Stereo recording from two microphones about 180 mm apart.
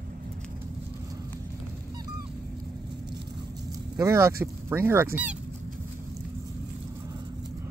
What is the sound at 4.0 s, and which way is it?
Speech, 15° right (ahead or behind).